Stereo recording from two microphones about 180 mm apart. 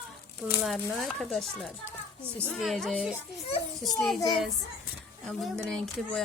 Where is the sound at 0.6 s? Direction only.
Centre (ahead or behind).